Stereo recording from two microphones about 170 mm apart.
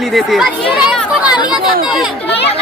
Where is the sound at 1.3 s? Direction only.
25° left (ahead or behind).